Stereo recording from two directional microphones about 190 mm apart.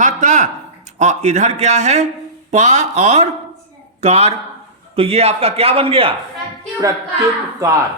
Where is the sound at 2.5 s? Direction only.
35° right (ahead or behind).